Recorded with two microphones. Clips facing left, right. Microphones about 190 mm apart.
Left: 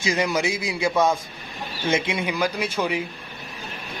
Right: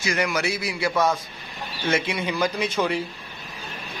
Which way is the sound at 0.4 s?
20° left (ahead or behind).